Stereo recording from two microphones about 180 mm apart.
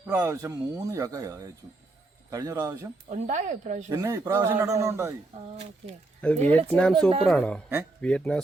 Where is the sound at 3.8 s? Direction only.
15° right (ahead or behind).